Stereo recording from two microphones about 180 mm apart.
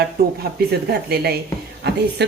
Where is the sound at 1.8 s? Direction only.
65° right (ahead or behind).